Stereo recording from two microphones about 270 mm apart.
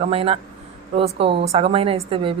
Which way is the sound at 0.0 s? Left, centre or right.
Right.